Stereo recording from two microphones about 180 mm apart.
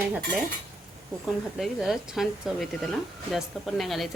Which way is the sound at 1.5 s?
Centre (ahead or behind).